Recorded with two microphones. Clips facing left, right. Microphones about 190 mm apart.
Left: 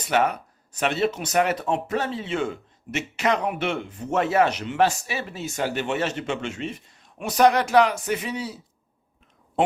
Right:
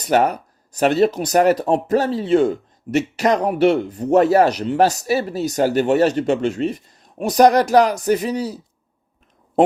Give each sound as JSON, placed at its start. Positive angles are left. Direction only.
{"t": 0.0, "sound": "speech", "side_deg": -40}